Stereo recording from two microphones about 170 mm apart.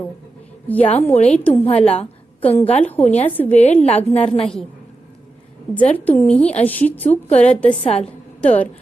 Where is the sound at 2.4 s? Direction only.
10° left (ahead or behind).